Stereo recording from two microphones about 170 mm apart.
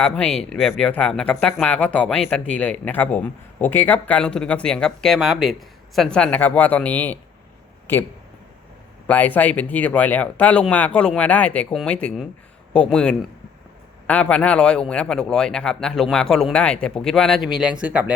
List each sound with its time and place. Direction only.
0.0 s a man's voice: 5° left (ahead or behind)
9.0 s a man's voice: 10° left (ahead or behind); by 18.1 s 10° right (ahead or behind)